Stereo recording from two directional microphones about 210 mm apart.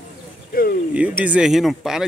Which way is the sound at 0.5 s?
45° left (ahead or behind).